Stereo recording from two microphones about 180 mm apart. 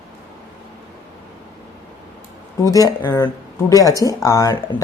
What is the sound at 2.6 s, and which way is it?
Speech, 20° left (ahead or behind).